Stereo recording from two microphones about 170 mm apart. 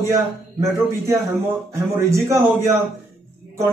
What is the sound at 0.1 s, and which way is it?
A man's voice, 15° right (ahead or behind).